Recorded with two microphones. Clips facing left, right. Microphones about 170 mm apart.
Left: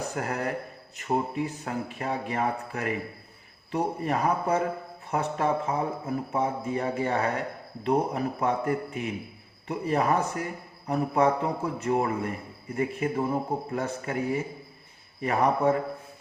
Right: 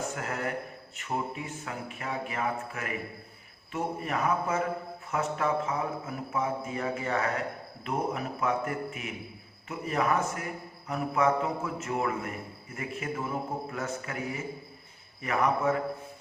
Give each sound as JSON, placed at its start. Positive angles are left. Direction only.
{"t": 0.0, "sound": "a man's voice", "side_deg": 35}